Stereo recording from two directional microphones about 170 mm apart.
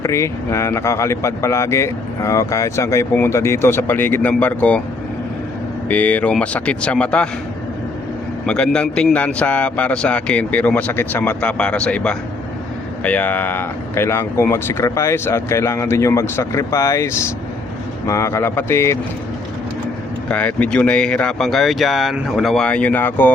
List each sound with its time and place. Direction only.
0.0 s speech: 15° left (ahead or behind)
5.9 s speech: 10° left (ahead or behind)
8.4 s speech: 5° left (ahead or behind)
20.2 s speech: 10° left (ahead or behind)